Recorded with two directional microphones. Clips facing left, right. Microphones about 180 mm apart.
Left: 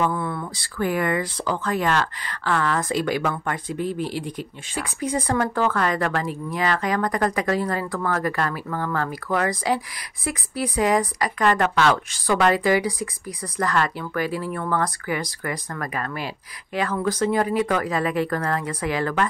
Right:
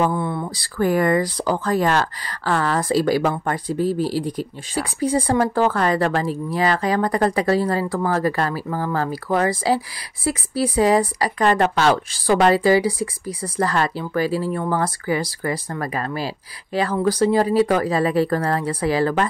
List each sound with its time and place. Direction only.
0.0 s speech: 25° right (ahead or behind)
0.7 s speech: 40° right (ahead or behind)